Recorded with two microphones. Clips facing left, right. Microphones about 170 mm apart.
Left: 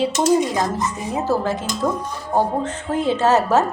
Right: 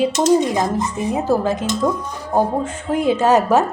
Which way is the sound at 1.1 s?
15° right (ahead or behind).